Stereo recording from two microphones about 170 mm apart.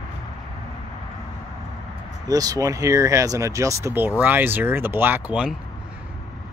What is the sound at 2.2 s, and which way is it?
Speech, 20° right (ahead or behind).